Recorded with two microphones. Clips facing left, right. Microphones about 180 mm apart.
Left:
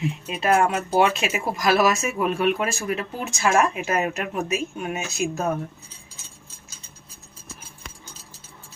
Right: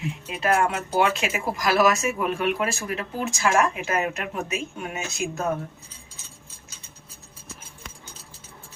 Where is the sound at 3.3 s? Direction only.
25° left (ahead or behind).